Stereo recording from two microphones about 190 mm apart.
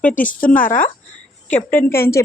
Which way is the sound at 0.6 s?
45° left (ahead or behind).